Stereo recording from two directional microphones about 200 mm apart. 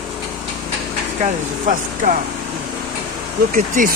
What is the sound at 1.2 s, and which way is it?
Speech, 40° right (ahead or behind).